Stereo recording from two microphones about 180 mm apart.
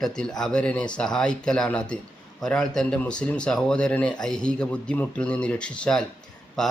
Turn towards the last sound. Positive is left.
turn(degrees=5)  # may be behind; listen again after turning